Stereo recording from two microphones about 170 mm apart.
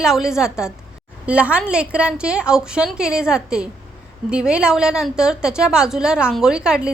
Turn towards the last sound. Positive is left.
turn(degrees=-5)  # may be behind; listen again after turning